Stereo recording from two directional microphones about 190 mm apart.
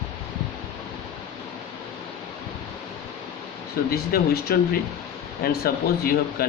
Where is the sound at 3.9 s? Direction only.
55° left (ahead or behind).